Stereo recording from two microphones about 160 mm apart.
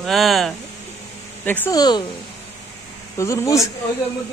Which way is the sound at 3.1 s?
20° left (ahead or behind).